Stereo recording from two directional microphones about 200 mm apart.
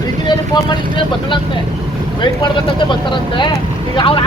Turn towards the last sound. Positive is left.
turn(degrees=25)  # may be behind; listen again after turning